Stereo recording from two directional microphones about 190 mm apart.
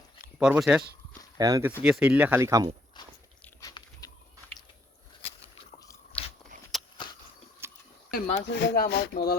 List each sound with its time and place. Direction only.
0.3 s speech: 5° right (ahead or behind)
1.4 s speech: 20° right (ahead or behind)
1.8 s speech: 5° right (ahead or behind)
3.0 s a sound: 25° left (ahead or behind)
6.1 s biting: 5° left (ahead or behind)
7.6 s a sound: 10° right (ahead or behind)
8.1 s speech: 65° left (ahead or behind)